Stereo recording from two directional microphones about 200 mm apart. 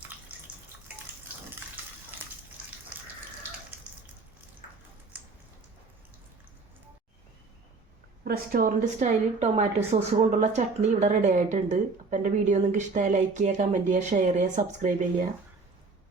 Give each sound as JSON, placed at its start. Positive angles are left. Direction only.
{"t": 8.2, "sound": "a woman's voice", "side_deg": -45}